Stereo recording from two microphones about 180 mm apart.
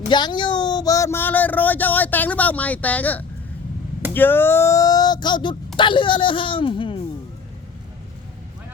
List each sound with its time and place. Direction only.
0.1 s speech: 25° left (ahead or behind)